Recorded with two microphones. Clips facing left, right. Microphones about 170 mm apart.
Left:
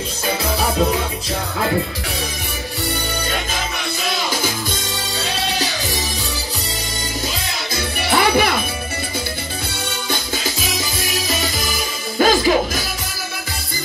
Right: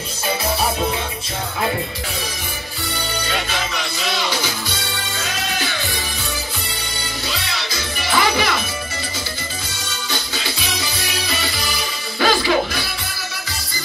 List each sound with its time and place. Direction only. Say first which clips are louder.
4.3 s music: left 2 dB; 45° left (ahead or behind)
5.2 s music: left 3 dB; 35° left (ahead or behind)
7.3 s music: left 2 dB; 50° left (ahead or behind)
10.3 s music: left 3 dB; 45° left (ahead or behind)